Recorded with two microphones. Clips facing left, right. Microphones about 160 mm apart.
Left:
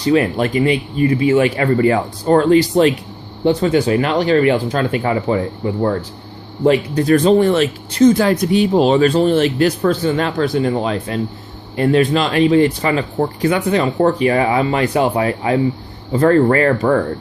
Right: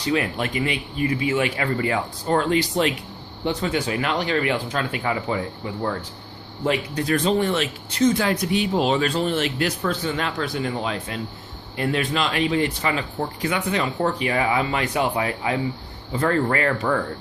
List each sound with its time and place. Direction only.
0.0 s speech: 40° left (ahead or behind)